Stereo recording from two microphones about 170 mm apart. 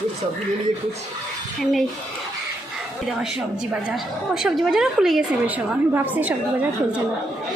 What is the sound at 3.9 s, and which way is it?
A woman's voice, centre (ahead or behind).